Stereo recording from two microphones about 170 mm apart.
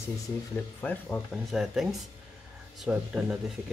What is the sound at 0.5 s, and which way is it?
Speech, 10° left (ahead or behind).